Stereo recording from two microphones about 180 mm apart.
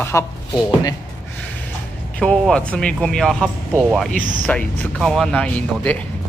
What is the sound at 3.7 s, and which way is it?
Speech, 10° right (ahead or behind).